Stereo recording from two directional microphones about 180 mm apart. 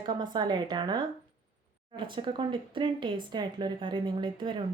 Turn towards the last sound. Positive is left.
turn(degrees=-25)  # may be behind; listen again after turning